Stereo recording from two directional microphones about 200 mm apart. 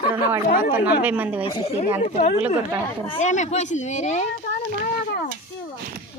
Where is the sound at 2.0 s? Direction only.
35° left (ahead or behind).